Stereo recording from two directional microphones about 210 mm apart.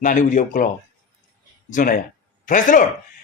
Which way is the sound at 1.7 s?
40° left (ahead or behind).